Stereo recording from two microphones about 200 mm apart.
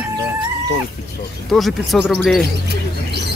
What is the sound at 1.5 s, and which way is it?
Speech, centre (ahead or behind).